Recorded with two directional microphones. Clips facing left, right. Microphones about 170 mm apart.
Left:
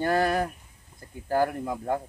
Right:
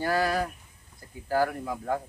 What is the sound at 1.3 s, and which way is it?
Speech, 20° left (ahead or behind).